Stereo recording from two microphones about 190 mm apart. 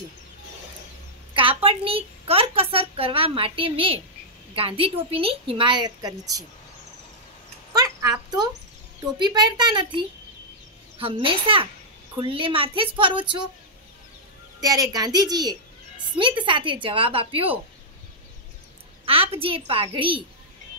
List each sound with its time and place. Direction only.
1.3 s a woman's voice: 25° right (ahead or behind)
7.7 s dog: 20° right (ahead or behind)
9.0 s a woman's voice: 20° right (ahead or behind)
14.6 s a woman's voice: 20° right (ahead or behind)
19.0 s a woman's voice: 30° right (ahead or behind)